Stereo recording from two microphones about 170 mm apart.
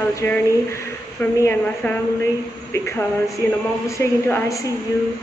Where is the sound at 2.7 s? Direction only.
15° left (ahead or behind).